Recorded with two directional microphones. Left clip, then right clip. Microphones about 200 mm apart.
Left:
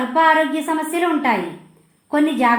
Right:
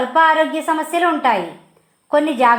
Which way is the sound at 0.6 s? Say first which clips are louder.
Right 3 dB; 25° right (ahead or behind).